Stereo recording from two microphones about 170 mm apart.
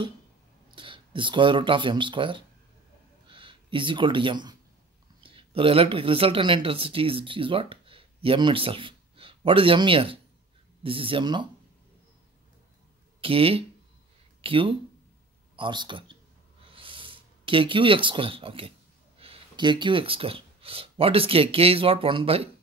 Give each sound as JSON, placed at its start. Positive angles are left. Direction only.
{"t": 0.7, "sound": "speech", "side_deg": -30}
{"t": 13.2, "sound": "speech", "side_deg": -35}
{"t": 16.6, "sound": "a sound", "side_deg": -30}
{"t": 19.1, "sound": "speech", "side_deg": -35}